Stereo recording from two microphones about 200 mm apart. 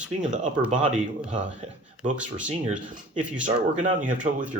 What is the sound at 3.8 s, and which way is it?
Speech, 40° right (ahead or behind).